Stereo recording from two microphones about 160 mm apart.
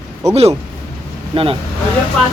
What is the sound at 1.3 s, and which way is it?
Speech, 35° right (ahead or behind).